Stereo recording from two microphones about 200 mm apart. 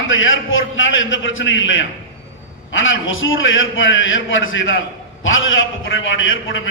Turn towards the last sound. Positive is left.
turn(degrees=75)  # may be behind; listen again after turning